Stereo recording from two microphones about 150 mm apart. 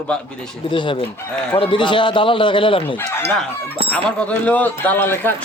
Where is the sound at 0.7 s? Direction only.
35° left (ahead or behind).